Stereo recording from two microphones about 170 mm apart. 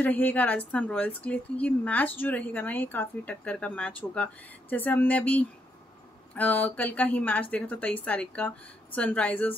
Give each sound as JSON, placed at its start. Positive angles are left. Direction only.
{"t": 0.0, "sound": "speech", "side_deg": 10}